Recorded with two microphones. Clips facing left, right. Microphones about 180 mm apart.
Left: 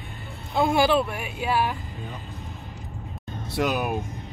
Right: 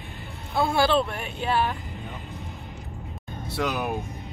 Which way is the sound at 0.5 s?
15° left (ahead or behind).